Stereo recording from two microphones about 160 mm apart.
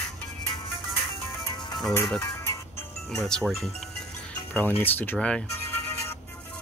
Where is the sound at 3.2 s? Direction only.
5° left (ahead or behind).